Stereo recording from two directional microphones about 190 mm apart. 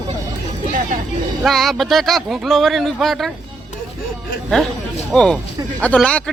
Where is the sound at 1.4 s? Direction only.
Centre (ahead or behind).